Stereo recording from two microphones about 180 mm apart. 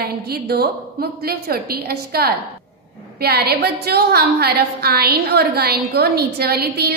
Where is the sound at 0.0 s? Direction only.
60° right (ahead or behind).